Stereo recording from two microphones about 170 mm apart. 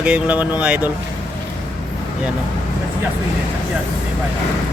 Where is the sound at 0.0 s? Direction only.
5° right (ahead or behind).